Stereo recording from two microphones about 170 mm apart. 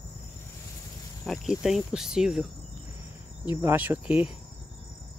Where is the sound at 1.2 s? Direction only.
Centre (ahead or behind).